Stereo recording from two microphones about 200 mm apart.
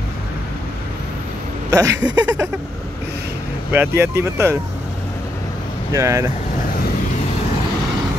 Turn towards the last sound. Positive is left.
turn(degrees=-15)  # may be behind; listen again after turning